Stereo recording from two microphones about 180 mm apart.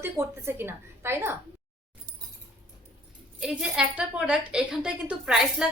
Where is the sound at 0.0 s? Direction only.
15° right (ahead or behind).